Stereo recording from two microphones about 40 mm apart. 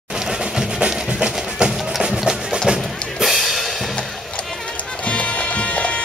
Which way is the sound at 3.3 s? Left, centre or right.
Centre.